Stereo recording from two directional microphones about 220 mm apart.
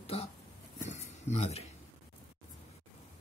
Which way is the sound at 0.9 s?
30° left (ahead or behind).